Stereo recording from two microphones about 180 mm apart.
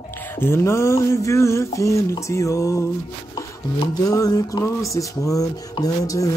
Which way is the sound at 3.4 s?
20° left (ahead or behind).